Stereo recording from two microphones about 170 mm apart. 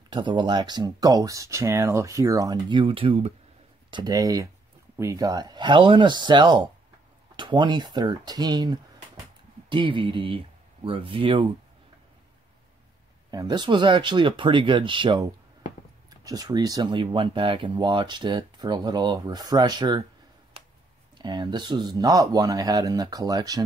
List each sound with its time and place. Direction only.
0.1 s speech: 25° right (ahead or behind)
3.9 s speech: 20° right (ahead or behind)
13.3 s speech: 25° right (ahead or behind)
21.2 s speech: 25° right (ahead or behind)